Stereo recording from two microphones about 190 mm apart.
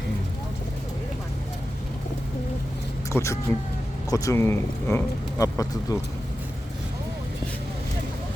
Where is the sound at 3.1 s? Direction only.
15° left (ahead or behind).